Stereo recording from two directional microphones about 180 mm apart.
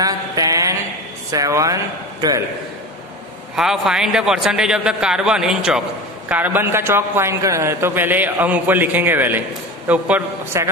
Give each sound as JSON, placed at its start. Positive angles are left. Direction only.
{"t": 0.0, "sound": "a sound", "side_deg": -20}
{"t": 1.3, "sound": "a man's voice", "side_deg": -20}
{"t": 3.5, "sound": "a man's voice", "side_deg": 0}